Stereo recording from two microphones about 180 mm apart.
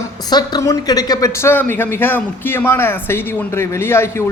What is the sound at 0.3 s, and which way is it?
A woman's voice, 20° left (ahead or behind).